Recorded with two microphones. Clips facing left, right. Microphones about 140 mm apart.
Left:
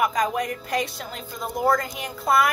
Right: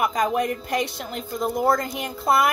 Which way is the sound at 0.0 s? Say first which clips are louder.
Right 1 dB; 25° right (ahead or behind).